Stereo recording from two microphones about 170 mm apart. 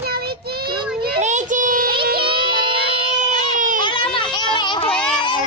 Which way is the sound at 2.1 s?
30° right (ahead or behind).